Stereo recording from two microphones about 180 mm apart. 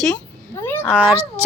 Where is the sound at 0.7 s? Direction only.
5° left (ahead or behind).